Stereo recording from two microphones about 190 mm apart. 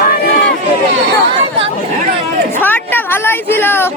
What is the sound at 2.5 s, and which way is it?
A woman's voice, 10° left (ahead or behind).